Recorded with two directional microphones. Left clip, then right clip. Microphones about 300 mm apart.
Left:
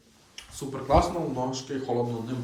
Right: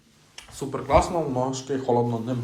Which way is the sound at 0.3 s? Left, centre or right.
Centre.